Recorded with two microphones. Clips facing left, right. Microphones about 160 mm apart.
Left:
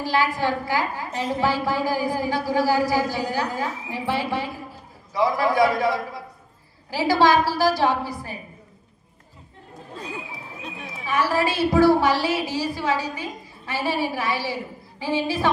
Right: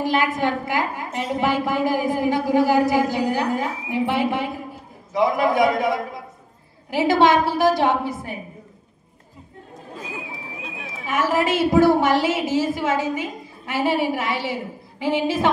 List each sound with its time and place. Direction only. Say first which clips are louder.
0.0 s a woman's voice: right 2 dB; 20° right (ahead or behind)
11.1 s a woman's voice: right 2 dB; 20° right (ahead or behind)